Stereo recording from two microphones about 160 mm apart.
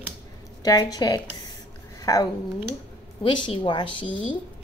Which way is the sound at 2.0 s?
20° left (ahead or behind).